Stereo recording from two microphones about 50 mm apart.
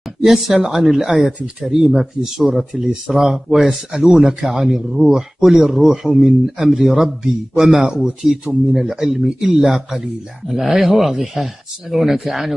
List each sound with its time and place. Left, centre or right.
0.2 s speech: centre